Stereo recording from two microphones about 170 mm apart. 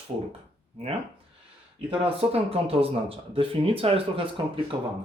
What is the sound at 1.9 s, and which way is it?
Speech, 35° right (ahead or behind).